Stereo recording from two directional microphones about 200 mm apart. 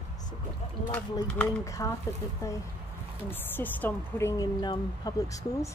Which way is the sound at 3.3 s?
10° left (ahead or behind).